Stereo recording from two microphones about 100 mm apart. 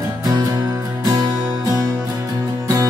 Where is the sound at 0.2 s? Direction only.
35° right (ahead or behind).